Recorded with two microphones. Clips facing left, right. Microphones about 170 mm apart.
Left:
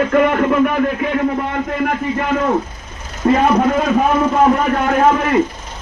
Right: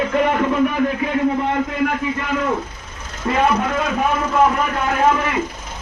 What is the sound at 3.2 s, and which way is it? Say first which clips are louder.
Speech: left 7 dB; 40° left (ahead or behind).